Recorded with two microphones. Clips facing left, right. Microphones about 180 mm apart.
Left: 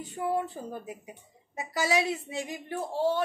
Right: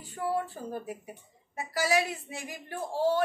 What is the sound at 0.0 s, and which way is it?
Speech, 20° left (ahead or behind).